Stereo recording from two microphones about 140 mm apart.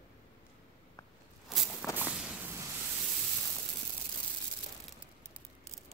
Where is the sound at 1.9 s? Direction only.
10° right (ahead or behind).